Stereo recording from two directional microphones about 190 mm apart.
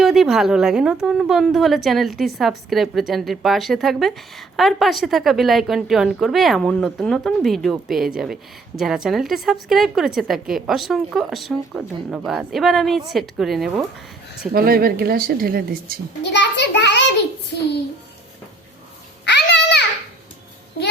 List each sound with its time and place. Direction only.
0.0 s a woman's voice: centre (ahead or behind)
14.5 s speech: 50° right (ahead or behind)
16.2 s a child's voice: 65° left (ahead or behind)
19.2 s a sound: 60° left (ahead or behind)